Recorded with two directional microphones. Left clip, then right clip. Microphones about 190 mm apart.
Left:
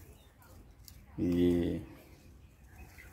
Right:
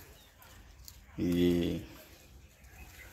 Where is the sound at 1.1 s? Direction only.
Centre (ahead or behind).